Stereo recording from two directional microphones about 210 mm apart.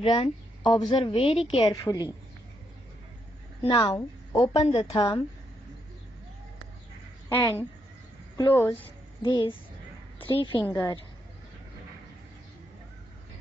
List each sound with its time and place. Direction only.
0.0 s a woman's voice: 20° left (ahead or behind)
3.6 s a woman's voice: 20° left (ahead or behind)
7.2 s a woman's voice: 10° left (ahead or behind)
9.2 s a woman's voice: 25° left (ahead or behind)